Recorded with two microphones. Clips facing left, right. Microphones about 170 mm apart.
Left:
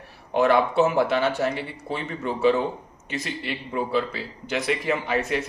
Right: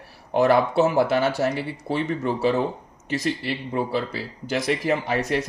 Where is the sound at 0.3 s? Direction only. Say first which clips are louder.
Right 1 dB; 40° right (ahead or behind).